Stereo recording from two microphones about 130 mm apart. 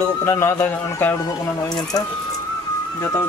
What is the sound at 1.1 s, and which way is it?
Speech, 30° left (ahead or behind).